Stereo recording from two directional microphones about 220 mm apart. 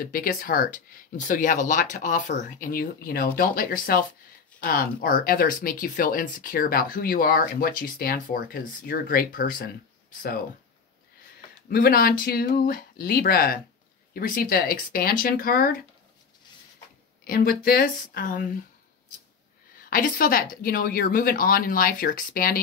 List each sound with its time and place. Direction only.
0.0 s speech: 40° left (ahead or behind)
11.7 s speech: 40° left (ahead or behind)
17.2 s speech: 45° left (ahead or behind)
19.9 s speech: 40° left (ahead or behind)